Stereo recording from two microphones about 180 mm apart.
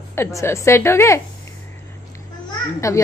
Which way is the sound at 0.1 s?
15° left (ahead or behind).